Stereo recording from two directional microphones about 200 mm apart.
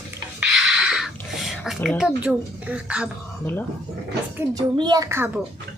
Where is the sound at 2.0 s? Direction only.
5° right (ahead or behind).